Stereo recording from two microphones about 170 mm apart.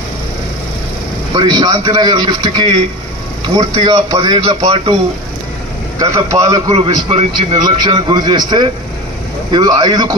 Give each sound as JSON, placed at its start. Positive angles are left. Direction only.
{"t": 1.3, "sound": "a man's voice", "side_deg": -25}
{"t": 5.9, "sound": "a man's voice", "side_deg": -20}
{"t": 6.7, "sound": "a man's voice", "side_deg": -35}